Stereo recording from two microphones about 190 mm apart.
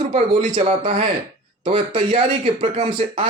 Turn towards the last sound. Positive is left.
turn(degrees=-35)  # may be behind; listen again after turning